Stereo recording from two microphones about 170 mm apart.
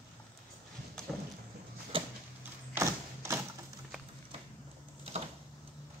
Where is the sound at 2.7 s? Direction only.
15° right (ahead or behind).